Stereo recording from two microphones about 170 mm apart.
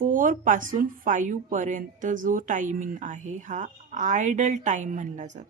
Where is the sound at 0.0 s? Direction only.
50° right (ahead or behind).